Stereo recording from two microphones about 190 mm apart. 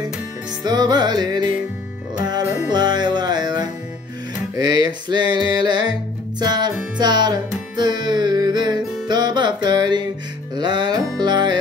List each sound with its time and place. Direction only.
0.7 s music: 20° right (ahead or behind)